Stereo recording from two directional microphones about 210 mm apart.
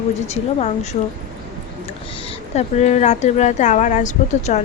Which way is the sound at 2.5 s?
35° left (ahead or behind).